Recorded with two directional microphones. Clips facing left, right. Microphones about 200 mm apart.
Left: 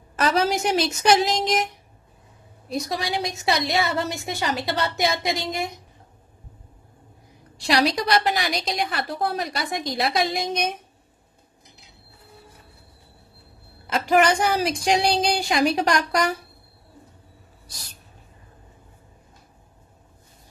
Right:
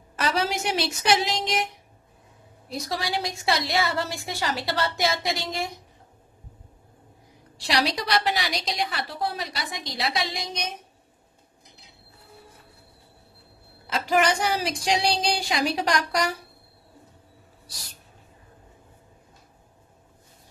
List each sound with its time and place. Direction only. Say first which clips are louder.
0.1 s a woman's voice: left 4 dB; 45° left (ahead or behind)
2.7 s a woman's voice: left 3 dB; 20° left (ahead or behind)
7.6 s a woman's voice: left 4 dB; 45° left (ahead or behind)
13.8 s a woman's voice: left 4 dB; 50° left (ahead or behind)